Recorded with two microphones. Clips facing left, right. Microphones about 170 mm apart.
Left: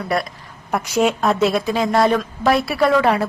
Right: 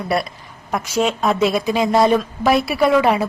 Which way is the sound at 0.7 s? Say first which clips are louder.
Left 1 dB; 10° left (ahead or behind).